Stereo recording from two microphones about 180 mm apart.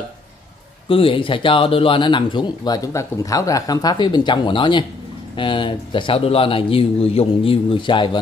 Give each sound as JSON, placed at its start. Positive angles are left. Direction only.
{"t": 0.8, "sound": "speech", "side_deg": 30}